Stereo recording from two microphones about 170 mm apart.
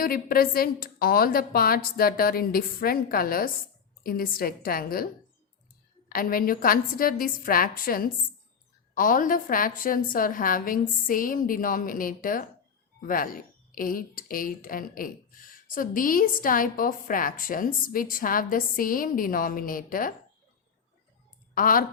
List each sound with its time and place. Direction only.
0.0 s speech: 60° left (ahead or behind)
6.1 s speech: 55° left (ahead or behind)
21.5 s speech: 55° left (ahead or behind)